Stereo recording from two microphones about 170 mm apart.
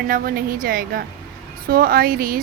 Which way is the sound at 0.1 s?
55° right (ahead or behind).